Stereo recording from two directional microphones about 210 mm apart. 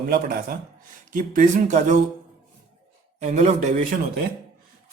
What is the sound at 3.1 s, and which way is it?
Speech, 35° right (ahead or behind).